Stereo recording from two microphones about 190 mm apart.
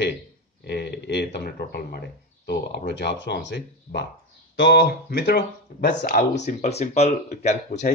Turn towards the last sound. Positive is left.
turn(degrees=40)  # may be behind; listen again after turning